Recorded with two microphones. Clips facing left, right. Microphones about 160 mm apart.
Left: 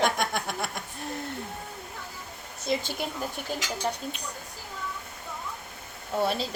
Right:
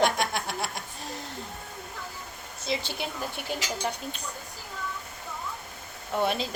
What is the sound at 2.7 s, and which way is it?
Speech, 50° left (ahead or behind).